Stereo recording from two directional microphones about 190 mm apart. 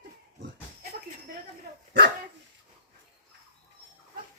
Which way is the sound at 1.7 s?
55° right (ahead or behind).